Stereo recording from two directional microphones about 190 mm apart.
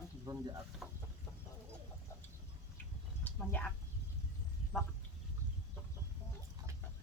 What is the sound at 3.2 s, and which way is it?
Speech, 10° left (ahead or behind).